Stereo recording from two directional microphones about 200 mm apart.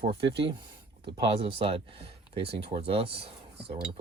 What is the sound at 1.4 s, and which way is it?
Speech, 30° right (ahead or behind).